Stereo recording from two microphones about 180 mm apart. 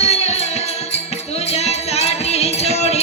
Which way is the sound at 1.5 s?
35° left (ahead or behind).